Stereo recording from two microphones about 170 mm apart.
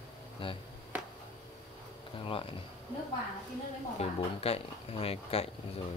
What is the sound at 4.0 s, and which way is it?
Speech, 35° left (ahead or behind).